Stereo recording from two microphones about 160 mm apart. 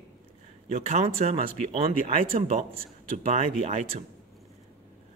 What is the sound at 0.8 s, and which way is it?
Speech, 40° right (ahead or behind).